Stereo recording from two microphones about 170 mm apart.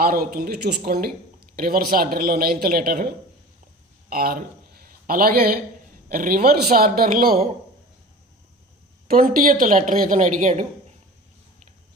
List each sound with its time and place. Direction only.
0.0 s a man's voice: 60° right (ahead or behind)
4.1 s a man's voice: 60° right (ahead or behind)
9.0 s speech: 55° right (ahead or behind)